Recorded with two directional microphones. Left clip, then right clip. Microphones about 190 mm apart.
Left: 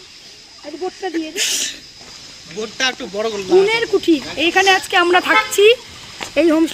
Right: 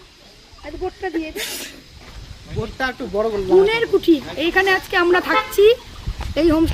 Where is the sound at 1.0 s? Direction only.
45° left (ahead or behind).